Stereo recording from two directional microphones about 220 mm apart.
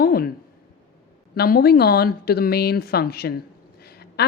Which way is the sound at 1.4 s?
45° left (ahead or behind).